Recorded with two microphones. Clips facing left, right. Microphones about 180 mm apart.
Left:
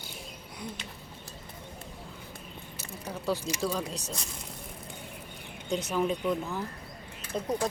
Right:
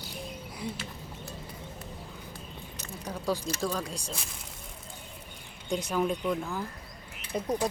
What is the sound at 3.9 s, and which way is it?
Speech, 5° right (ahead or behind).